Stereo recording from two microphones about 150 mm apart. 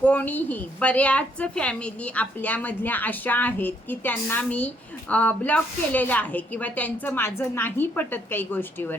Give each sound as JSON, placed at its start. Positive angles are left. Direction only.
{"t": 0.0, "sound": "a woman's voice", "side_deg": 10}